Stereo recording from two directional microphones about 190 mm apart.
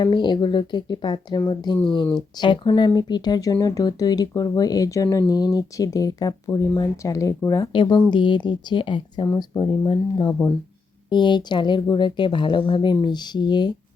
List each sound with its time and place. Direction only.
0.0 s speech: 25° left (ahead or behind)